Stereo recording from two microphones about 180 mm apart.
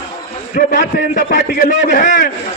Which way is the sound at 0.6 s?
50° left (ahead or behind).